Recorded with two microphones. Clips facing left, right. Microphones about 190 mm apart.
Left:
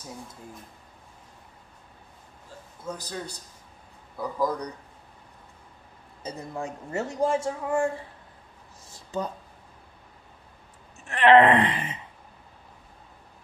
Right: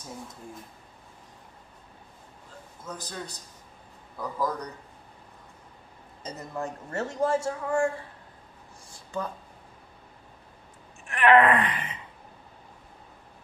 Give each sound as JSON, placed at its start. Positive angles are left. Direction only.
{"t": 2.8, "sound": "speech", "side_deg": 10}
{"t": 6.2, "sound": "speech", "side_deg": 10}
{"t": 11.1, "sound": "groan", "side_deg": 30}